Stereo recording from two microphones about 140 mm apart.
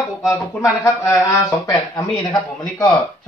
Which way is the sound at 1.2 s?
20° left (ahead or behind).